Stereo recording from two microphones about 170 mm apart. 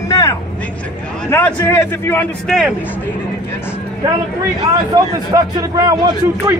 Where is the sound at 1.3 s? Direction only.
15° left (ahead or behind).